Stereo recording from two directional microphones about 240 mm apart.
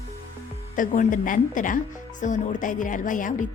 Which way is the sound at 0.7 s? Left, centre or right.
Left.